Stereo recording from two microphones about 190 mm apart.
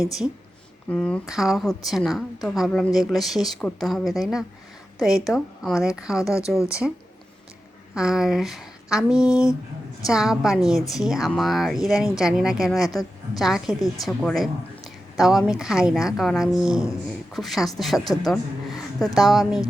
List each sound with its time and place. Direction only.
0.9 s a woman's voice: 5° left (ahead or behind)
6.2 s speech: 15° left (ahead or behind)
6.7 s a woman's voice: 5° right (ahead or behind)
7.9 s a woman's voice: 5° right (ahead or behind)
12.9 s a woman's voice: 20° left (ahead or behind)
13.4 s a woman's voice: centre (ahead or behind)